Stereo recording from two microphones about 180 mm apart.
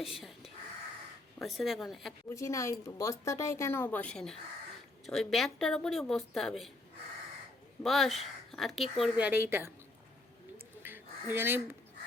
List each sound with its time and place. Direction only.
0.0 s speech: centre (ahead or behind)
1.4 s speech: centre (ahead or behind)
2.3 s a woman's voice: 15° left (ahead or behind); by 6.7 s centre (ahead or behind)
7.9 s speech: centre (ahead or behind)
10.8 s a sound: 10° right (ahead or behind)